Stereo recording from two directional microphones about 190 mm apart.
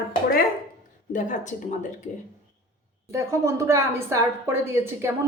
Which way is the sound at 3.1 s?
15° right (ahead or behind).